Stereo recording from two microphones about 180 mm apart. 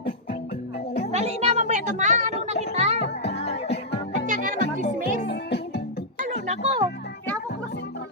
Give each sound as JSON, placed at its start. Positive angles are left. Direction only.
{"t": 1.1, "sound": "a child's voice", "side_deg": -35}
{"t": 2.5, "sound": "music", "side_deg": -35}
{"t": 3.2, "sound": "music", "side_deg": 35}
{"t": 3.7, "sound": "music", "side_deg": 70}
{"t": 4.3, "sound": "music", "side_deg": -50}
{"t": 5.2, "sound": "music", "side_deg": 70}
{"t": 6.1, "sound": "music", "side_deg": -40}